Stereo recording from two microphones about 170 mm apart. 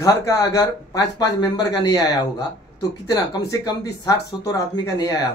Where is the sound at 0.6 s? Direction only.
20° left (ahead or behind).